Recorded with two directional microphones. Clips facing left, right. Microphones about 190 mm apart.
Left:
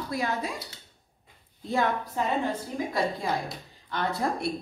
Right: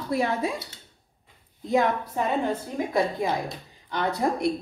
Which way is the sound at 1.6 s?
20° right (ahead or behind).